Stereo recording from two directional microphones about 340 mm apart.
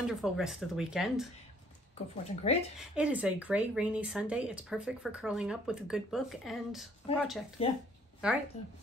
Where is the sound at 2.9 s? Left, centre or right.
Centre.